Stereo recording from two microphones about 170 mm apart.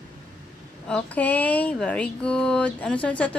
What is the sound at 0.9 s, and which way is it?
Speech, 10° left (ahead or behind).